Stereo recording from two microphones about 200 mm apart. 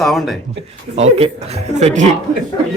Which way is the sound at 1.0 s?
30° right (ahead or behind).